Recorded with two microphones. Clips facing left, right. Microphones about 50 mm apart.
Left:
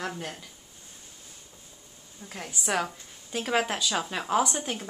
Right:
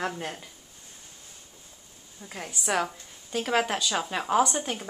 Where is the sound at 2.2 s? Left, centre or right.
Centre.